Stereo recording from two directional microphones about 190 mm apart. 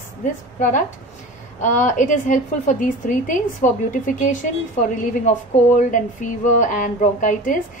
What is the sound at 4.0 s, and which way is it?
Speech, 45° left (ahead or behind).